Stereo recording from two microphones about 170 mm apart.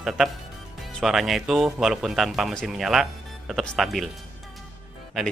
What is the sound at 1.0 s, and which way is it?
Speech, centre (ahead or behind).